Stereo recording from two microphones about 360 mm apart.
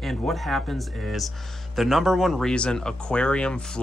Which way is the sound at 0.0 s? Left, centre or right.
Centre.